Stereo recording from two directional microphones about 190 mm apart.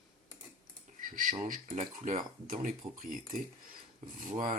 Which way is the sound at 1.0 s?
45° right (ahead or behind).